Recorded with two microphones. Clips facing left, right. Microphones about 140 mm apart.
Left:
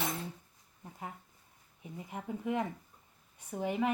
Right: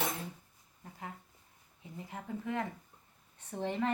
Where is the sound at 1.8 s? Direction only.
15° left (ahead or behind).